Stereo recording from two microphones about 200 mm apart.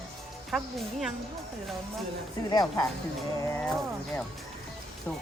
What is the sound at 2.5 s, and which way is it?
Speech, 20° left (ahead or behind).